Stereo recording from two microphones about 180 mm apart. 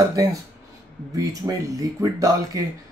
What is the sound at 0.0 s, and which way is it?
Speech, 20° right (ahead or behind).